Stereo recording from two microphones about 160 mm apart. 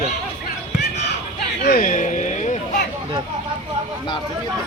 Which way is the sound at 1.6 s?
60° left (ahead or behind).